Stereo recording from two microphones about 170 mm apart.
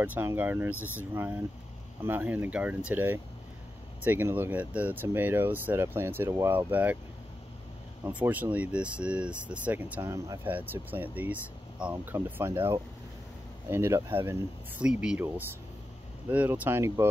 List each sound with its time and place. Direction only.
0.0 s speech: 10° right (ahead or behind)
0.7 s speech: 15° left (ahead or behind)
1.1 s speech: 10° right (ahead or behind)
8.0 s speech: 10° right (ahead or behind)